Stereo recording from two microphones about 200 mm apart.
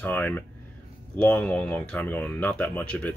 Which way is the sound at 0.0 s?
10° left (ahead or behind).